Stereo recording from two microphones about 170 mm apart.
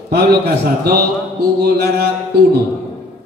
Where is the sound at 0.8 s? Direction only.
70° right (ahead or behind).